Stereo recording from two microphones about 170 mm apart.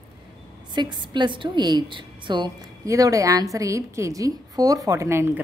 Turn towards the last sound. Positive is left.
turn(degrees=-15)  # may be behind; listen again after turning